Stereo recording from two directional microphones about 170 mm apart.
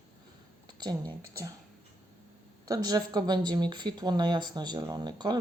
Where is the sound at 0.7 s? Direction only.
25° right (ahead or behind).